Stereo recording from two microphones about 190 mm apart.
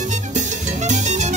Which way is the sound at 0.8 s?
40° right (ahead or behind).